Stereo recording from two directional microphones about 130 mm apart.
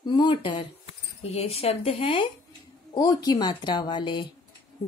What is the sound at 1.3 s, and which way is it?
A woman's voice, 50° left (ahead or behind).